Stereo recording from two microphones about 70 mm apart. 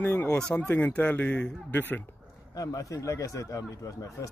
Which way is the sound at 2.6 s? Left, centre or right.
Left.